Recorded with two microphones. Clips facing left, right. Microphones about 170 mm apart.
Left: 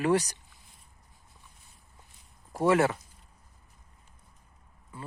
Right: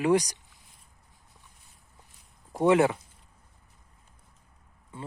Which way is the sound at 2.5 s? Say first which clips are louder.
Right 2 dB; 15° right (ahead or behind).